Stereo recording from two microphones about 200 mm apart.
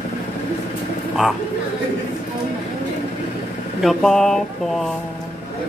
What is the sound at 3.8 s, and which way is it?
Speech, centre (ahead or behind).